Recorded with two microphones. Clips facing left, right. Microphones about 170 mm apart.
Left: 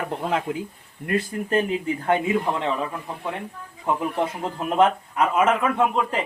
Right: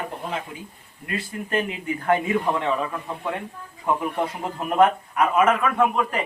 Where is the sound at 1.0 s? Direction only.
50° left (ahead or behind).